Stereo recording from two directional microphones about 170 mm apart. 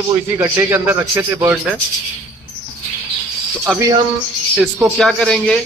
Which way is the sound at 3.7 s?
Centre (ahead or behind).